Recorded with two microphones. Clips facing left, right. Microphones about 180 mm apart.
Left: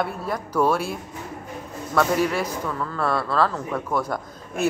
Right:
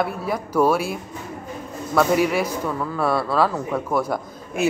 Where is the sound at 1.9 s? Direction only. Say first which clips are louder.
Right 3 dB; 10° right (ahead or behind).